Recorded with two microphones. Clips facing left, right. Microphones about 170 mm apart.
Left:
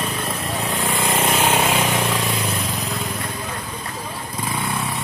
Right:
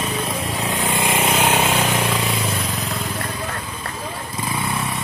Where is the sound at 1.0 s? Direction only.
5° right (ahead or behind).